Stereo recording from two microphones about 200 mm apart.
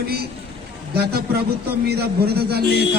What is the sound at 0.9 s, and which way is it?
A man's voice, 55° right (ahead or behind).